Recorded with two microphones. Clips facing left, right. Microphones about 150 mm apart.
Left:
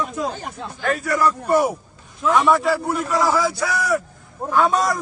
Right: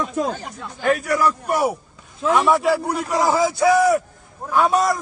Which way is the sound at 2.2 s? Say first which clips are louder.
Even; 30° right (ahead or behind).